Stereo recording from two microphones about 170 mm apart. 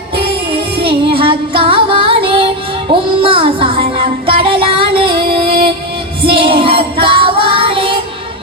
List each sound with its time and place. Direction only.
0.2 s music: 30° right (ahead or behind)
6.2 s female singing: 30° right (ahead or behind)